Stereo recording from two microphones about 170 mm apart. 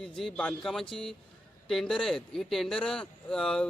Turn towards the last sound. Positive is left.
turn(degrees=5)  # may be behind; listen again after turning